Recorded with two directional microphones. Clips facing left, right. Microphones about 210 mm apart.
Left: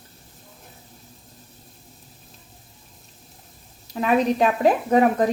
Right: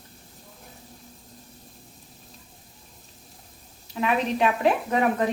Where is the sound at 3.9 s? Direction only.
40° left (ahead or behind).